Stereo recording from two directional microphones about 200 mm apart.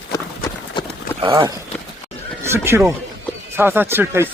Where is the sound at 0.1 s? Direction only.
15° left (ahead or behind).